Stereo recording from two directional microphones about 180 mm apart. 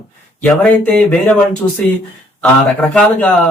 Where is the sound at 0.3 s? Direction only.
5° left (ahead or behind).